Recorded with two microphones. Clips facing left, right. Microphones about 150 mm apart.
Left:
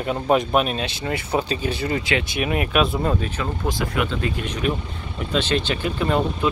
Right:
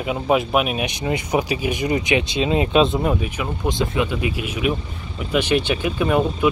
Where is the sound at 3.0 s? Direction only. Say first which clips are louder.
Right 1 dB; 10° right (ahead or behind).